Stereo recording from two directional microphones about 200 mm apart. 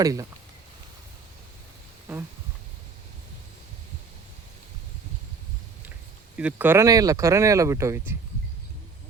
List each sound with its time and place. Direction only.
0.0 s speech: 15° right (ahead or behind)
6.3 s speech: 5° right (ahead or behind)